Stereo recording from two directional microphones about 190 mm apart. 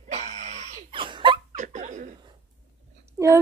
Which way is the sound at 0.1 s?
40° right (ahead or behind).